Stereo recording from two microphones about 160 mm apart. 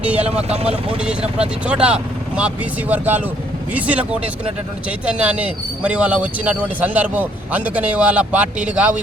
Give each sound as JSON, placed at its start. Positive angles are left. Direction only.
{"t": 0.0, "sound": "speech", "side_deg": -10}
{"t": 0.4, "sound": "speech", "side_deg": -40}
{"t": 0.9, "sound": "speech", "side_deg": -5}